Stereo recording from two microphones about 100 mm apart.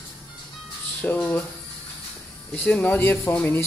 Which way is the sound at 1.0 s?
15° left (ahead or behind).